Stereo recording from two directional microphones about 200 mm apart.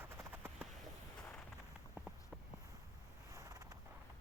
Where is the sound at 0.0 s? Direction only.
10° right (ahead or behind).